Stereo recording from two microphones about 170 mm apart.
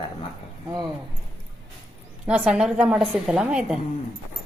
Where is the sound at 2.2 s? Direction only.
5° right (ahead or behind).